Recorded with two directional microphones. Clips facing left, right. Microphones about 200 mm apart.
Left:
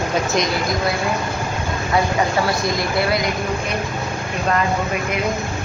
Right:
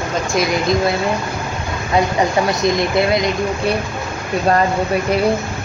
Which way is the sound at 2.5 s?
20° right (ahead or behind).